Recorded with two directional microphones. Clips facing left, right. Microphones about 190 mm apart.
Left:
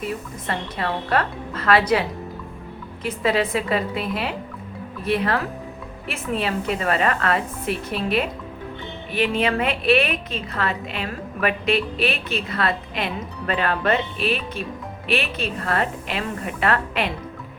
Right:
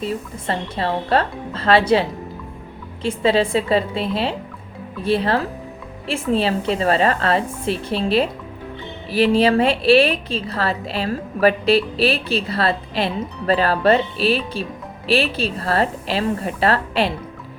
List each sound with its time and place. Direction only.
0.0 s a woman's voice: 30° right (ahead or behind)